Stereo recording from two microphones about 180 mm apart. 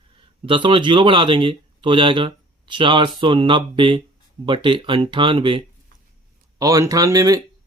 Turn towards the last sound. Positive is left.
turn(degrees=-20)  # may be behind; listen again after turning